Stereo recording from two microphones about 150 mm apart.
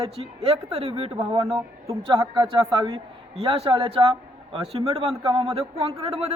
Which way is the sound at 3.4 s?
40° right (ahead or behind).